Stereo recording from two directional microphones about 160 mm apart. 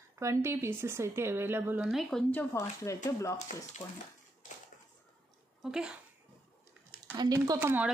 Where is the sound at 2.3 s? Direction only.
20° left (ahead or behind).